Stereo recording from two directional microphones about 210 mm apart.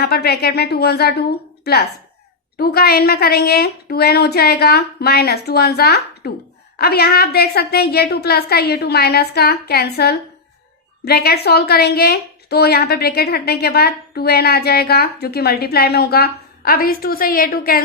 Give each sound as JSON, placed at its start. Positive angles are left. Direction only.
{"t": 0.0, "sound": "a woman's voice", "side_deg": 50}